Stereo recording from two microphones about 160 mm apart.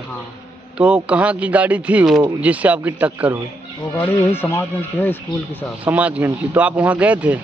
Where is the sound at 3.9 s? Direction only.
10° left (ahead or behind).